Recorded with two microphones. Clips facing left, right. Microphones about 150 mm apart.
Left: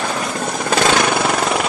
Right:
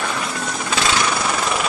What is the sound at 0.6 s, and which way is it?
Jackhammer, 50° left (ahead or behind).